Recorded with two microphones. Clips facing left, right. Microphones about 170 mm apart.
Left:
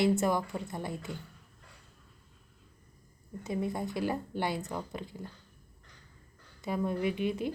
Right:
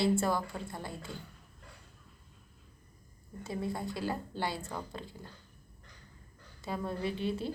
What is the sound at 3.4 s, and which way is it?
Speech, 20° left (ahead or behind).